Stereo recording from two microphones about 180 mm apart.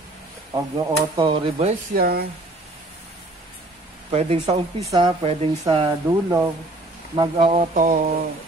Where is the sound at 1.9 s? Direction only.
55° right (ahead or behind).